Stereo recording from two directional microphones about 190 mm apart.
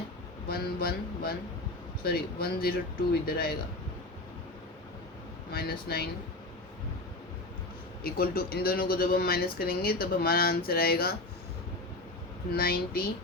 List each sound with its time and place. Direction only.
0.4 s speech: 55° left (ahead or behind)
5.5 s speech: 55° left (ahead or behind)
8.0 s speech: 50° left (ahead or behind)
12.5 s speech: 50° left (ahead or behind)